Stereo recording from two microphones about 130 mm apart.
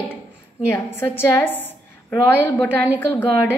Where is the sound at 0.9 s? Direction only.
20° left (ahead or behind).